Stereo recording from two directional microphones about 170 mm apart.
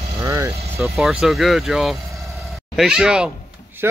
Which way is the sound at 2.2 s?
Centre (ahead or behind).